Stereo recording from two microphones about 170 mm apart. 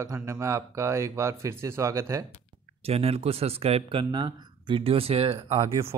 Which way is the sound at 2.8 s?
35° right (ahead or behind).